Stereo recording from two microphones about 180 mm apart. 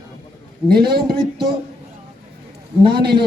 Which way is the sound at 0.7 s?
60° right (ahead or behind).